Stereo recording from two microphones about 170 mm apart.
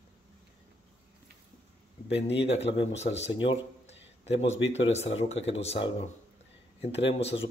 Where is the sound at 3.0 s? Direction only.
40° left (ahead or behind).